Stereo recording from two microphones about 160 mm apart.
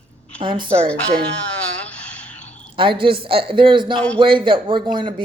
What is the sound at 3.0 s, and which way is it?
Speech, 35° right (ahead or behind).